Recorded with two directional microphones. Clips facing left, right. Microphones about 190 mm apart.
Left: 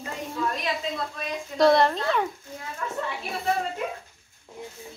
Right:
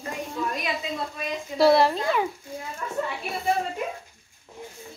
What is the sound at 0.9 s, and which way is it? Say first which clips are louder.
A woman's voice: right 1 dB; 5° right (ahead or behind).